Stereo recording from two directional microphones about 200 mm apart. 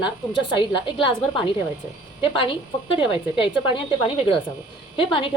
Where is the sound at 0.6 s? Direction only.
25° left (ahead or behind).